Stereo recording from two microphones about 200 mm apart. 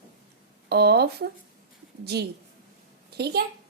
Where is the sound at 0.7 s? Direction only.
55° right (ahead or behind).